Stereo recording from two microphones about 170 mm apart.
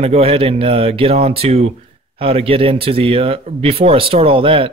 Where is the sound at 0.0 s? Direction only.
35° right (ahead or behind).